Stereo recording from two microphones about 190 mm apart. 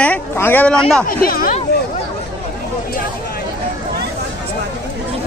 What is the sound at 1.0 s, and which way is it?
Speech, 50° left (ahead or behind).